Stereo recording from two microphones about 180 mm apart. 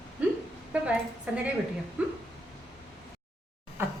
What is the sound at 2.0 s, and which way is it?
Speech, 5° right (ahead or behind).